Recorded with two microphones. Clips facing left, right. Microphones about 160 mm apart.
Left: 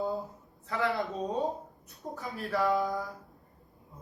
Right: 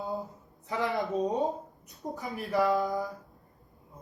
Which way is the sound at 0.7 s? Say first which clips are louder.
Right 1 dB; 20° right (ahead or behind).